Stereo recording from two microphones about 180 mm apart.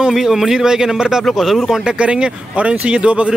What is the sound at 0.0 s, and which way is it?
A man's voice, centre (ahead or behind).